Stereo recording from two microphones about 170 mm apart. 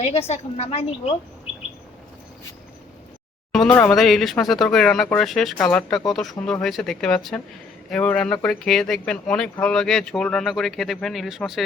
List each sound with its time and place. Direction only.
0.0 s a woman's voice: 40° left (ahead or behind)
3.5 s speech: 5° left (ahead or behind)